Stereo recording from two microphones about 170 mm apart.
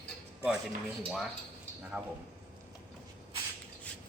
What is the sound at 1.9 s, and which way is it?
Speech, 10° right (ahead or behind).